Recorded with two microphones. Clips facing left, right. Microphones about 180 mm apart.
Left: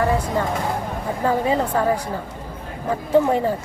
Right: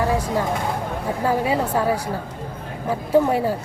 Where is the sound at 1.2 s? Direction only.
10° right (ahead or behind).